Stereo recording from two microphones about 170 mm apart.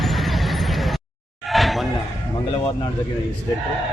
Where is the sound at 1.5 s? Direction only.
Centre (ahead or behind).